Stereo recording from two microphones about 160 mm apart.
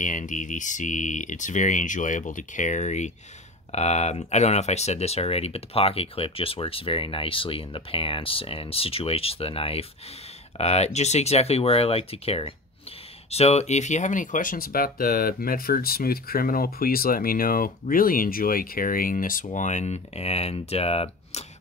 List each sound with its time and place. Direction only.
0.0 s speech: 50° left (ahead or behind)